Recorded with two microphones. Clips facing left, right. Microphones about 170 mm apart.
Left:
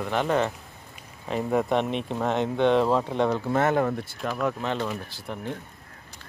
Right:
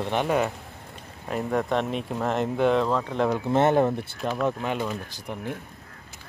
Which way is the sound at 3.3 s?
25° right (ahead or behind).